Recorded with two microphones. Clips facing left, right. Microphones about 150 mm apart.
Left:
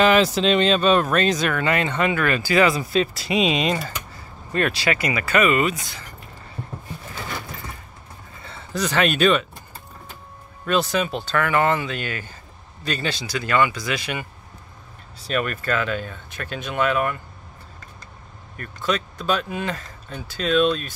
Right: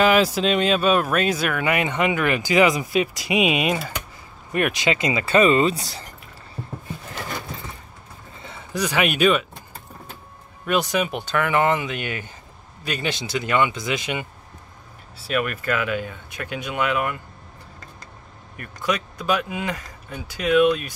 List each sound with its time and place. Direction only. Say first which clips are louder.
0.0 s speech: left 1 dB; 5° right (ahead or behind); by 6.0 s 35° right (ahead or behind)
8.4 s speech: even; 15° right (ahead or behind)
10.6 s speech: even; 15° right (ahead or behind)
15.2 s speech: even; 10° right (ahead or behind)
18.9 s speech: even; 15° right (ahead or behind)